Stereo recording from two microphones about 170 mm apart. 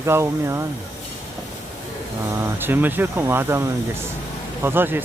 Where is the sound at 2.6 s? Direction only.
10° right (ahead or behind).